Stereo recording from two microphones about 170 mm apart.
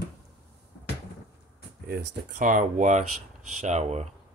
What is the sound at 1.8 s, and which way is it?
Speech, 55° right (ahead or behind).